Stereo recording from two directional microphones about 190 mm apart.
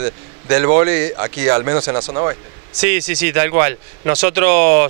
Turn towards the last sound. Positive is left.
turn(degrees=-15)  # may be behind; listen again after turning